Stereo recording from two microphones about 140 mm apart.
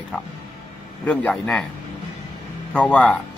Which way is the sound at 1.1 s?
10° left (ahead or behind).